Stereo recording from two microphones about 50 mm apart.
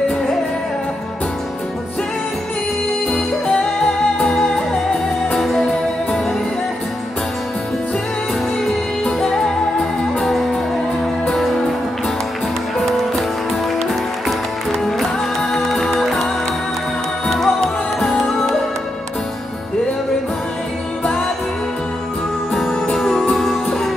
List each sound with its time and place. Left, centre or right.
3.4 s music: centre
5.3 s music: centre
8.6 s music: centre
12.7 s music: centre
17.3 s music: centre
22.6 s music: centre